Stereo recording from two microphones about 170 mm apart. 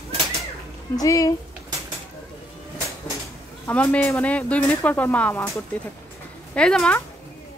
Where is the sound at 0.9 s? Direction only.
20° left (ahead or behind).